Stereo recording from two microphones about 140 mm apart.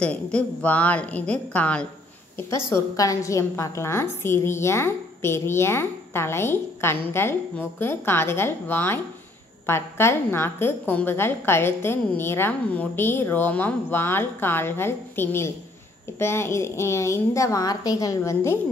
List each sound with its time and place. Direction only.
0.0 s a woman's voice: 10° left (ahead or behind)